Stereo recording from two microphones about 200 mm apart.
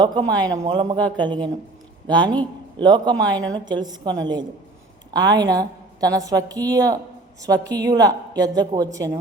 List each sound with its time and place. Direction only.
0.0 s a woman's voice: 20° right (ahead or behind)
0.9 s speech: 5° left (ahead or behind)
1.2 s a woman's voice: 25° right (ahead or behind)
5.1 s a woman's voice: 20° right (ahead or behind)